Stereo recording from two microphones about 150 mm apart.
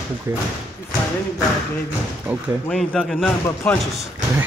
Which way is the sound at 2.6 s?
5° left (ahead or behind).